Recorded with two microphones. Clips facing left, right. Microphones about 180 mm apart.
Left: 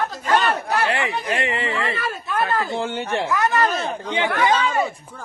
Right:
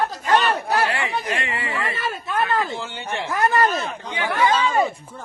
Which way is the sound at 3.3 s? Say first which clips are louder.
Right 3 dB; 35° right (ahead or behind).